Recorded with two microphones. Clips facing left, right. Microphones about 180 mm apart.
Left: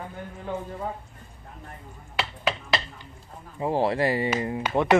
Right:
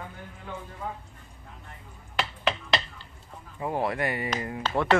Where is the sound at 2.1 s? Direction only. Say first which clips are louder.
Even; 5° left (ahead or behind).